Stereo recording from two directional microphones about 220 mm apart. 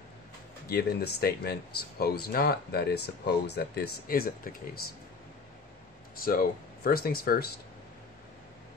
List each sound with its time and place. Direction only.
0.7 s speech: 45° left (ahead or behind)
6.2 s speech: 40° left (ahead or behind)